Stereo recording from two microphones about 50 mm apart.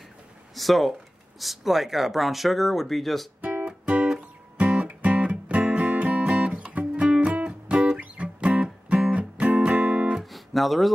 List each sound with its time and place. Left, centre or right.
0.6 s speech: centre
3.3 s guitar: right
4.6 s music: right
10.3 s music: centre